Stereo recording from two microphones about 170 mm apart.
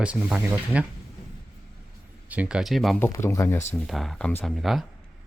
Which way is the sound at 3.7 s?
Centre (ahead or behind).